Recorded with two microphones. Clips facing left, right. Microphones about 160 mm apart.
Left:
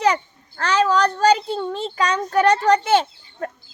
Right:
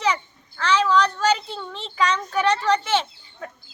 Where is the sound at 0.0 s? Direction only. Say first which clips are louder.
Left 4 dB; 45° left (ahead or behind).